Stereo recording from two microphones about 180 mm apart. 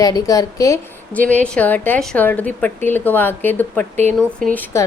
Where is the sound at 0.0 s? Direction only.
20° left (ahead or behind).